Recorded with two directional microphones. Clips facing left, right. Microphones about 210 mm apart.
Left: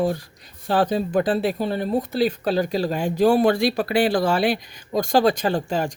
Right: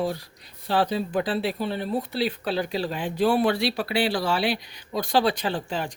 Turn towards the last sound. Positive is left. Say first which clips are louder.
# left 6 dB
turn(degrees=45)  # may be behind; listen again after turning